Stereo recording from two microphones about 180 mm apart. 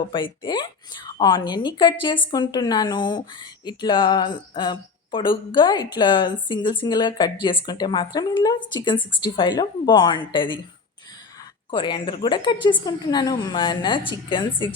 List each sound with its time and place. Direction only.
0.1 s a woman's voice: 25° left (ahead or behind)
11.7 s a woman's voice: 25° left (ahead or behind)